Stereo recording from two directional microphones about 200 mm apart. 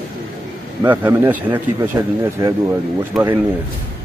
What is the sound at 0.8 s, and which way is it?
Speech, 10° right (ahead or behind).